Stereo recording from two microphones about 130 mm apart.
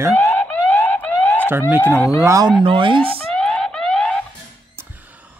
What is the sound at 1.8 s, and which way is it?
Speech, 15° left (ahead or behind).